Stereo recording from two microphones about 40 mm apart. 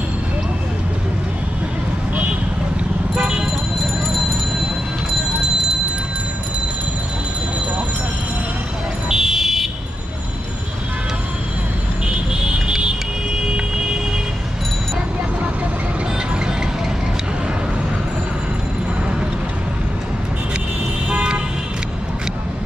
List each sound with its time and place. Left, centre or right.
3.2 s vehicle: right
9.1 s fire alarm: centre
12.3 s vehicle: right
21.1 s vehicle: right